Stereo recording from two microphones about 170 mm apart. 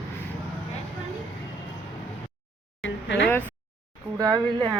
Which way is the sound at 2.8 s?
90° left.